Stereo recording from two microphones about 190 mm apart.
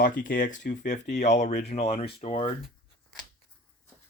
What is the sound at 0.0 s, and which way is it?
Speech, 45° left (ahead or behind).